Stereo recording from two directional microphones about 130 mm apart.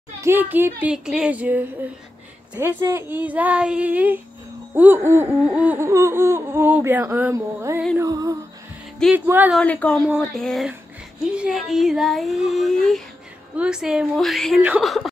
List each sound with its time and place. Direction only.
0.2 s speech: 15° right (ahead or behind)
7.3 s music: 25° right (ahead or behind)
9.1 s speech: 15° right (ahead or behind)
9.6 s speech: 10° left (ahead or behind)
9.9 s speech: 10° right (ahead or behind)
10.3 s speech: centre (ahead or behind)